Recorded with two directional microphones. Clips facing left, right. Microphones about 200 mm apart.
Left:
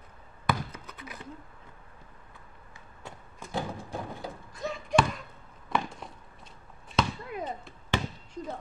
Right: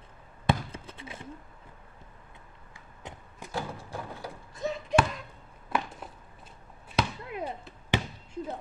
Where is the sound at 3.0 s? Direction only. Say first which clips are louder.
Right 1 dB; 20° right (ahead or behind).